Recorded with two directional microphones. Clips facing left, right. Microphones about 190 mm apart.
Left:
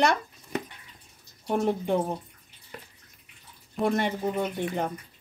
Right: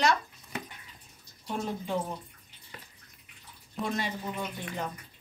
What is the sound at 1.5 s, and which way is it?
Speech, 60° left (ahead or behind).